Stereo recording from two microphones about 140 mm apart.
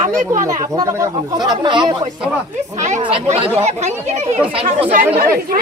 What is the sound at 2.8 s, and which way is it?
Speech, 60° right (ahead or behind).